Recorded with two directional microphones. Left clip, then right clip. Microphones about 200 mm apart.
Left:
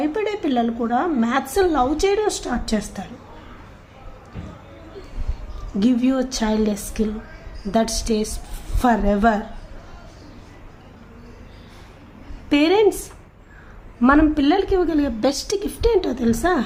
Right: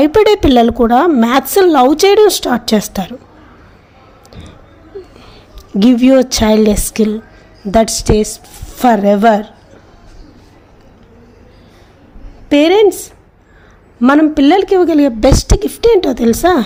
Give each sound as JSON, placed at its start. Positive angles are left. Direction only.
{"t": 0.0, "sound": "a woman's voice", "side_deg": -55}
{"t": 5.8, "sound": "a woman's voice", "side_deg": -40}
{"t": 12.5, "sound": "a woman's voice", "side_deg": -30}
{"t": 14.0, "sound": "a woman's voice", "side_deg": -30}